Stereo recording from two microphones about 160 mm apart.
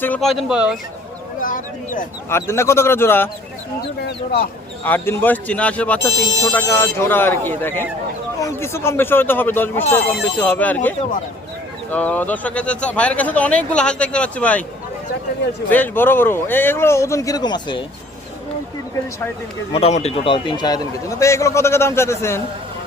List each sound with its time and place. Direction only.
0.0 s speech: 5° left (ahead or behind)
1.4 s speech: 55° left (ahead or behind)
2.3 s speech: 15° left (ahead or behind)
4.8 s speech: 15° left (ahead or behind)
11.9 s speech: 10° left (ahead or behind)
15.7 s speech: 10° left (ahead or behind); by 17.8 s 30° left (ahead or behind)
19.7 s a man's voice: 40° left (ahead or behind); by 22.4 s 15° left (ahead or behind)